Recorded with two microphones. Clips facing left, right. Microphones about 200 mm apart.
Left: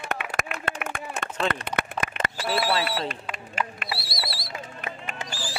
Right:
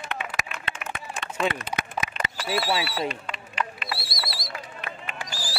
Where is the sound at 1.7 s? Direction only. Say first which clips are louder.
Left 2 dB; 60° left (ahead or behind).